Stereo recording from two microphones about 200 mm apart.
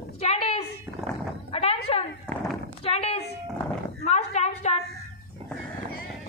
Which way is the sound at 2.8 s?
30° left (ahead or behind).